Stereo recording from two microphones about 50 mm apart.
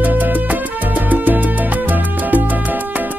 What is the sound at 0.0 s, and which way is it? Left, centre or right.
Salsa music, right.